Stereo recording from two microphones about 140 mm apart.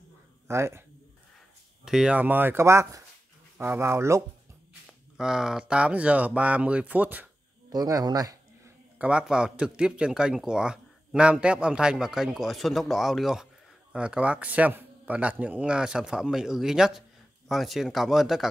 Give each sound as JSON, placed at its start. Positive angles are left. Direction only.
{"t": 0.5, "sound": "speech", "side_deg": -20}
{"t": 1.9, "sound": "a man's voice", "side_deg": -5}
{"t": 5.1, "sound": "a man's voice", "side_deg": -5}
{"t": 7.7, "sound": "speech", "side_deg": -30}
{"t": 8.9, "sound": "a man's voice", "side_deg": -10}